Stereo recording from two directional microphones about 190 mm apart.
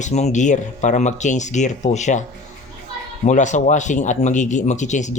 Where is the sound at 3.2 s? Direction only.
40° left (ahead or behind).